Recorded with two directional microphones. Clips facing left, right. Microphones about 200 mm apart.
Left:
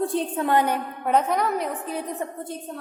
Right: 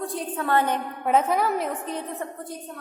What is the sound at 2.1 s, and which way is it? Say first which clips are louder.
Speech: left 2 dB; 20° left (ahead or behind).